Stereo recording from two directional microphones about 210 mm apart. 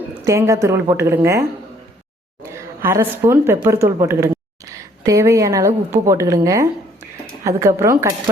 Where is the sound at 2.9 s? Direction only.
10° right (ahead or behind).